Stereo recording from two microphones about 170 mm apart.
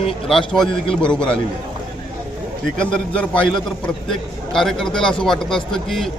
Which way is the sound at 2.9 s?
5° left (ahead or behind).